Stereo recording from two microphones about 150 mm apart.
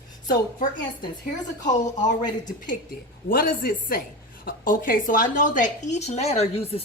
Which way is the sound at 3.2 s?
75° left (ahead or behind).